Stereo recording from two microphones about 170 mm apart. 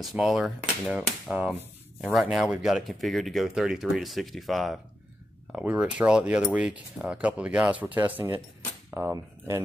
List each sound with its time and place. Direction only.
0.0 s speech: centre (ahead or behind)
5.5 s cutlery: 5° right (ahead or behind)
8.9 s speech: 15° right (ahead or behind)